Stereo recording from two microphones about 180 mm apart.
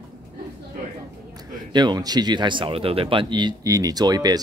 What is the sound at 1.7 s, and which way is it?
Speech, 25° right (ahead or behind).